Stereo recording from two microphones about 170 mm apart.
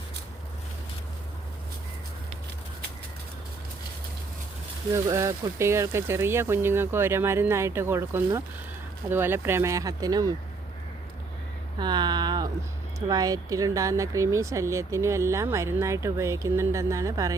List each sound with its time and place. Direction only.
5.0 s speech: 15° right (ahead or behind)
11.8 s speech: 25° right (ahead or behind)